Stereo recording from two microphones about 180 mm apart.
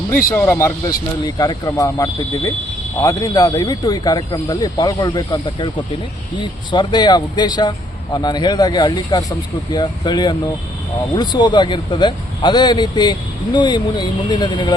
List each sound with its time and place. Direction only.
0.3 s a man's voice: 15° left (ahead or behind)